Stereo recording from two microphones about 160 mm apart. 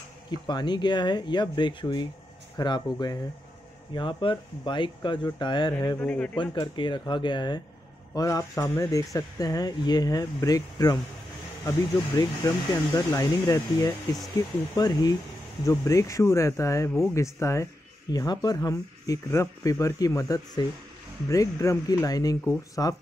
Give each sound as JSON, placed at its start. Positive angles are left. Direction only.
{"t": 0.5, "sound": "speech", "side_deg": 25}
{"t": 5.9, "sound": "speech", "side_deg": 10}
{"t": 6.3, "sound": "speech", "side_deg": 30}
{"t": 12.2, "sound": "speech", "side_deg": 20}